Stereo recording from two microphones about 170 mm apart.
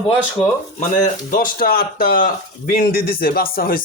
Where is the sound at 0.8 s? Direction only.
50° left (ahead or behind).